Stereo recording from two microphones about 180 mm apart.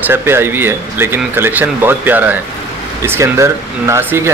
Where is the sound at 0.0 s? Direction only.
10° right (ahead or behind).